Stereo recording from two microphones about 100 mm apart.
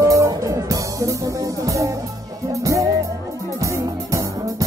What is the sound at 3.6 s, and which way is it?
Music, 35° right (ahead or behind).